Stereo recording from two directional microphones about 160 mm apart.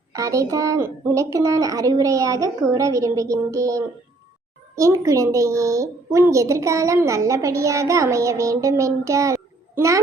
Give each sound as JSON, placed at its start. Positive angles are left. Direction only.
{"t": 0.1, "sound": "a woman's voice", "side_deg": -20}